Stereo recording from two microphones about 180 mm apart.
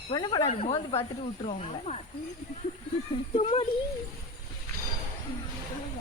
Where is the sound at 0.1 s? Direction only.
25° left (ahead or behind).